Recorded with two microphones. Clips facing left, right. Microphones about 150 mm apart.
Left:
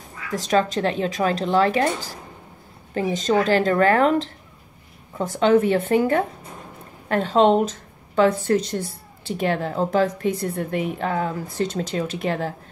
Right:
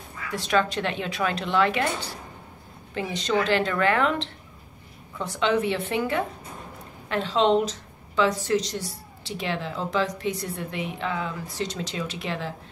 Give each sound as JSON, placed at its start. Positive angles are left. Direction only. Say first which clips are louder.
{"t": 0.3, "sound": "speech", "louder": "left 4 dB", "side_deg": 40}
{"t": 2.9, "sound": "a woman's voice", "louder": "left 5 dB", "side_deg": 45}